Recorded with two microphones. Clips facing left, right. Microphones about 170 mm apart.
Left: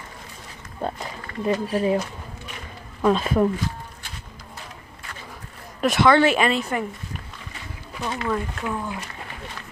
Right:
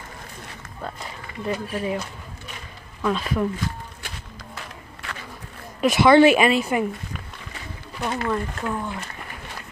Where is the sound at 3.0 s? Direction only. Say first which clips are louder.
Left 4 dB; 30° left (ahead or behind).